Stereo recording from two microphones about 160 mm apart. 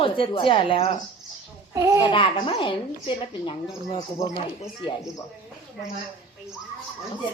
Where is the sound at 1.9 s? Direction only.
30° left (ahead or behind).